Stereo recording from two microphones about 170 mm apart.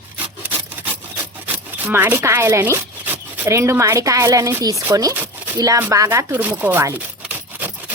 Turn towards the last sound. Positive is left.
turn(degrees=-10)  # may be behind; listen again after turning